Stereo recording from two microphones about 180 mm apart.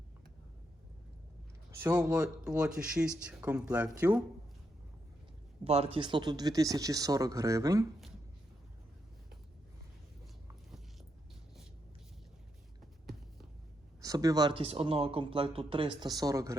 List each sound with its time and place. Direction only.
1.8 s speech: 5° right (ahead or behind)
5.6 s speech: 35° right (ahead or behind); by 7.9 s 20° right (ahead or behind)
14.0 s speech: 20° right (ahead or behind)